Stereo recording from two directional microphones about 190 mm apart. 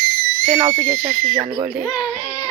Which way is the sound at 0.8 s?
50° right (ahead or behind).